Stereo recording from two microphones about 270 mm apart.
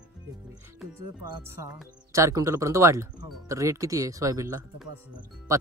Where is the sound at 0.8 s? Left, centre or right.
Centre.